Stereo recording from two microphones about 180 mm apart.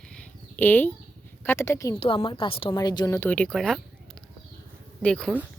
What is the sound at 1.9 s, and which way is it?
Speech, 30° left (ahead or behind).